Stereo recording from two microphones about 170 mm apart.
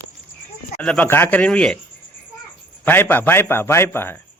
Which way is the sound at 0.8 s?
5° left (ahead or behind).